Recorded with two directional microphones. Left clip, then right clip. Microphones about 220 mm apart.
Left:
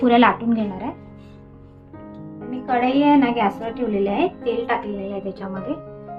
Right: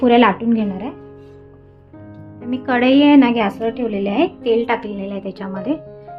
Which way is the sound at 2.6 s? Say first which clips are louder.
Right 4 dB; 50° right (ahead or behind).